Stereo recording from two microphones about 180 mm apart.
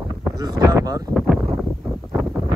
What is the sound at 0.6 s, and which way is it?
Speech, 20° right (ahead or behind).